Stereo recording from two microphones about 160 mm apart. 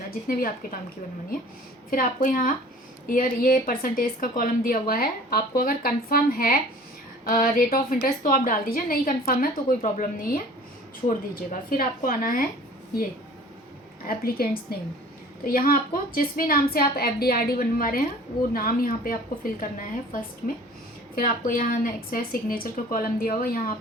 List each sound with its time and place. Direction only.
0.3 s a woman's voice: 65° left (ahead or behind)
1.9 s a woman's voice: 60° left (ahead or behind)
14.1 s a woman's voice: 70° left (ahead or behind)
21.2 s a woman's voice: 60° left (ahead or behind)